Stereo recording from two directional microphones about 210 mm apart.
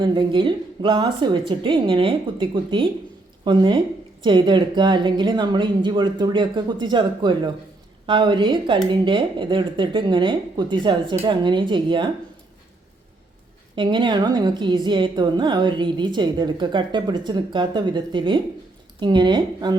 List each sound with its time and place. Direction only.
0.0 s a woman's voice: 20° right (ahead or behind)
13.7 s a woman's voice: 20° right (ahead or behind)